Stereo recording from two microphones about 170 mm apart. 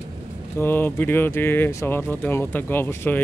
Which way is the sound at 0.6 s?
10° left (ahead or behind).